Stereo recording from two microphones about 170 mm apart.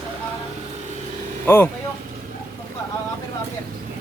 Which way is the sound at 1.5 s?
10° left (ahead or behind).